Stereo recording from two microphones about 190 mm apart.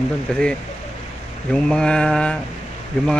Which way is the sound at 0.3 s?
5° left (ahead or behind).